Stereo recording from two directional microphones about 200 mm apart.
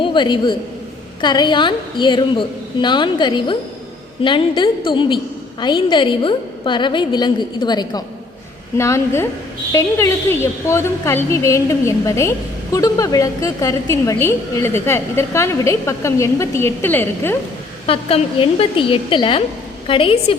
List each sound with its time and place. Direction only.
0.0 s a woman's voice: 25° left (ahead or behind)
17.8 s a woman's voice: 30° left (ahead or behind)